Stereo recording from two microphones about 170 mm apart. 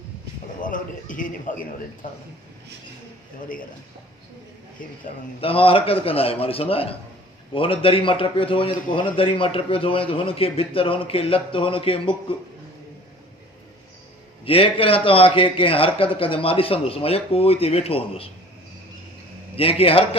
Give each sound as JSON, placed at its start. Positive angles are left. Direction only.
{"t": 0.6, "sound": "a man's voice", "side_deg": 50}
{"t": 5.4, "sound": "a man's voice", "side_deg": 35}
{"t": 14.4, "sound": "a man's voice", "side_deg": 35}
{"t": 19.5, "sound": "a man's voice", "side_deg": 35}